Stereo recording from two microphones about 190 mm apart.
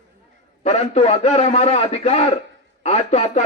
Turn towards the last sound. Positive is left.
turn(degrees=35)  # may be behind; listen again after turning